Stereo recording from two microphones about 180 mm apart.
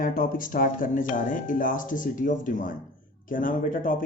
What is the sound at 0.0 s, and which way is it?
Speech, 50° left (ahead or behind).